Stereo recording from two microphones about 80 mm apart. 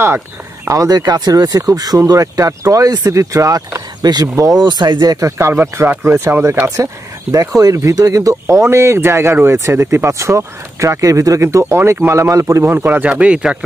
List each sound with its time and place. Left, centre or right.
0.7 s speech: right
4.9 s speech: right
5.4 s speech: right
6.8 s speech: right
12.7 s speech: right